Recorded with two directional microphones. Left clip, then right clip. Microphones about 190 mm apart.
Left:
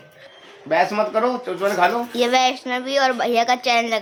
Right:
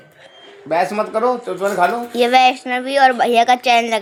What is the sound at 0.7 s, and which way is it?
Speech, 25° right (ahead or behind).